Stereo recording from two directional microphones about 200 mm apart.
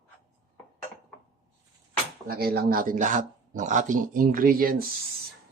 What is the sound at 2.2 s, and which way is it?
Speech, 50° right (ahead or behind).